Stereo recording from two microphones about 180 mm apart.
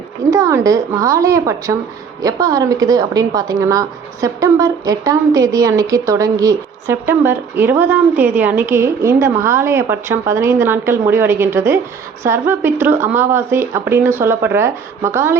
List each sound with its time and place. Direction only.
0.3 s a woman's voice: 20° right (ahead or behind)